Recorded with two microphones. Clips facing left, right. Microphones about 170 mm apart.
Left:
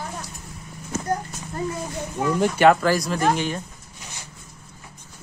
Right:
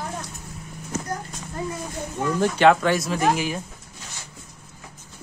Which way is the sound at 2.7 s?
Centre (ahead or behind).